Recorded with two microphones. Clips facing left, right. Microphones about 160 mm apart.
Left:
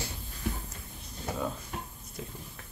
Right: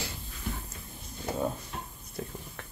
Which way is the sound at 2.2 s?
50° right (ahead or behind).